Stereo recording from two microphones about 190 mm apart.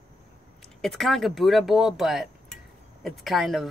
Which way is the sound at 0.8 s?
Centre (ahead or behind).